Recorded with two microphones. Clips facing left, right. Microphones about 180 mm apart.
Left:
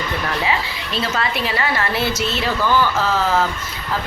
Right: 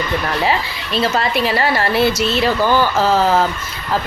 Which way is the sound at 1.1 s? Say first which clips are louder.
Right 5 dB; 40° right (ahead or behind).